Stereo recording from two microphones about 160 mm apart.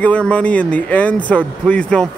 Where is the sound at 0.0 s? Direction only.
10° left (ahead or behind).